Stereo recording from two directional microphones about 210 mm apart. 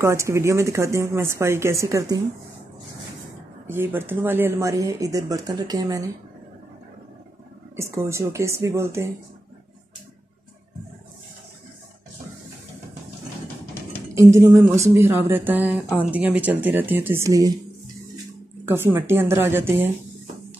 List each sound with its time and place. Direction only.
0.0 s speech: 15° right (ahead or behind)
3.6 s speech: 10° right (ahead or behind)
7.7 s speech: 15° right (ahead or behind)
14.1 s speech: 15° right (ahead or behind)
18.7 s speech: 10° right (ahead or behind)